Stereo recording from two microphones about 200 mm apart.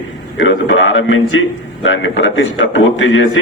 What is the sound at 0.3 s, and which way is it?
A man's voice, 70° left (ahead or behind).